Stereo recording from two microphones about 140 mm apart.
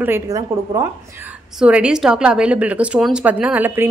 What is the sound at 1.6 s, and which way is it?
A woman's voice, 10° right (ahead or behind).